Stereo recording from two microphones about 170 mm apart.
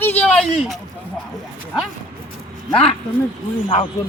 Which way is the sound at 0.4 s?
Centre (ahead or behind).